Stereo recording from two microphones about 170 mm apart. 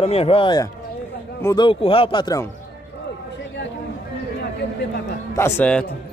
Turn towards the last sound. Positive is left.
turn(degrees=10)  # may be behind; listen again after turning